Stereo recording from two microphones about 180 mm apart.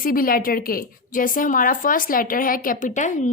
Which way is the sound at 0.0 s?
55° left (ahead or behind).